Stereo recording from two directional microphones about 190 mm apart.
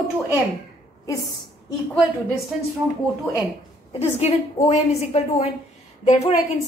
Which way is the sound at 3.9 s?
35° left (ahead or behind).